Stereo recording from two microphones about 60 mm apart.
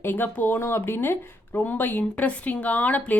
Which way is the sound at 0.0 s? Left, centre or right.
Left.